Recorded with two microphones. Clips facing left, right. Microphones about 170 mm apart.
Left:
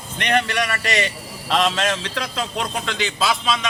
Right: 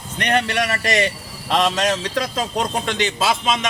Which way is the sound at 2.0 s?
40° right (ahead or behind).